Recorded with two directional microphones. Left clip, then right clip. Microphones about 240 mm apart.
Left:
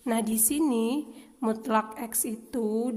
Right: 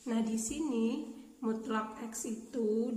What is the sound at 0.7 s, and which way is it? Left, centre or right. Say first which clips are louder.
A woman's voice: left 7 dB; left.